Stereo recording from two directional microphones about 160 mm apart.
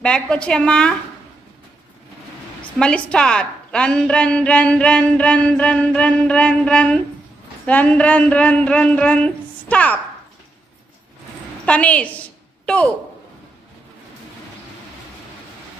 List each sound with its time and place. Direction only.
0.0 s a woman's voice: 5° left (ahead or behind)
2.8 s a woman's voice: 5° left (ahead or behind)
11.6 s a sound: 10° left (ahead or behind)